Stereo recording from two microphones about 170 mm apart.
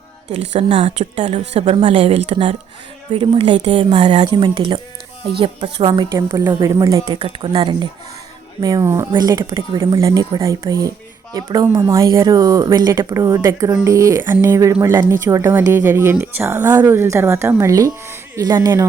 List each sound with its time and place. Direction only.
0.3 s a woman's voice: 40° right (ahead or behind)
5.8 s speech: 20° right (ahead or behind)
7.2 s speech: 30° right (ahead or behind)